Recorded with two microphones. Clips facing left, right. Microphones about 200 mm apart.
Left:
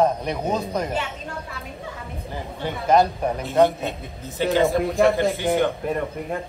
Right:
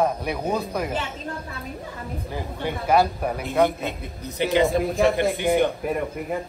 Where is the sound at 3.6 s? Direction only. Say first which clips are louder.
Left 3 dB; 15° left (ahead or behind).